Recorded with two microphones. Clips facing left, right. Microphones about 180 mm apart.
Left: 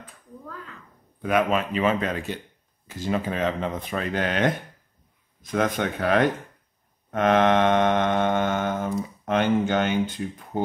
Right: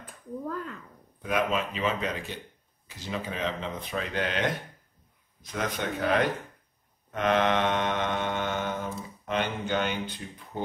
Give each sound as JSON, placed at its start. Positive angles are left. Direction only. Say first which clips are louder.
{"t": 1.2, "sound": "speech", "louder": "left 5 dB", "side_deg": 60}
{"t": 7.1, "sound": "mantra", "louder": "left 5 dB", "side_deg": 50}